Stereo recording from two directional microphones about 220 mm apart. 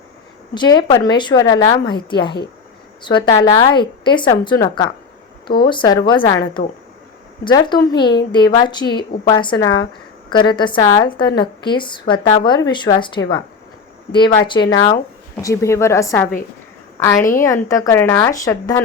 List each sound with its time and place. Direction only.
0.5 s a woman's voice: 20° left (ahead or behind)
14.1 s a woman's voice: 20° left (ahead or behind)
17.3 s a woman's voice: 15° left (ahead or behind)